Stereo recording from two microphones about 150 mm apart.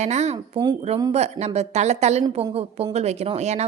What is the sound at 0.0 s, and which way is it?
A woman's voice, 50° right (ahead or behind).